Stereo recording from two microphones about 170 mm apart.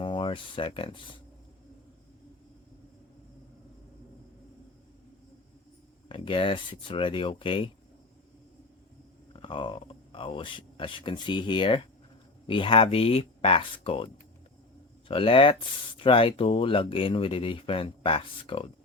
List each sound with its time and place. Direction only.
0.0 s speech: 30° left (ahead or behind)
6.1 s speech: 30° left (ahead or behind)
9.3 s speech: 30° left (ahead or behind)